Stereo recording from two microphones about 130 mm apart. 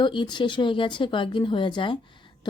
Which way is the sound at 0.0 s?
35° left (ahead or behind).